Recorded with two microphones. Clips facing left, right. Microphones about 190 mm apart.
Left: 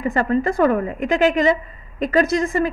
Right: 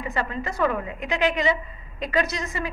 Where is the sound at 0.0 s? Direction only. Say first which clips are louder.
Left 10 dB; 50° left (ahead or behind).